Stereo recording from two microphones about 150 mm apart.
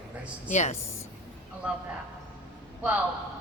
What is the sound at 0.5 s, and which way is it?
Speech, 50° left (ahead or behind).